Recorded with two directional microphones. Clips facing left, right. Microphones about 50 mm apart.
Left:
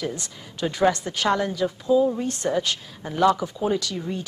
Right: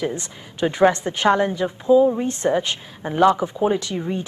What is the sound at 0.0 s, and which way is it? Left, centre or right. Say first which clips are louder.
A woman's voice: right 4 dB; right.